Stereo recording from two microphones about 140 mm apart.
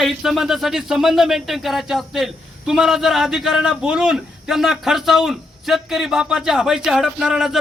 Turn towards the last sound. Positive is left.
turn(degrees=-5)  # may be behind; listen again after turning